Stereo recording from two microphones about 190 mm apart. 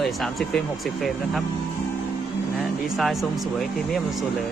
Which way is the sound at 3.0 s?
Centre (ahead or behind).